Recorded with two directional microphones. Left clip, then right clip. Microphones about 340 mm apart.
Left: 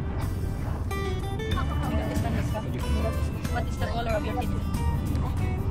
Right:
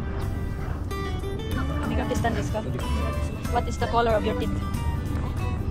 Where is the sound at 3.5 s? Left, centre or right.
Right.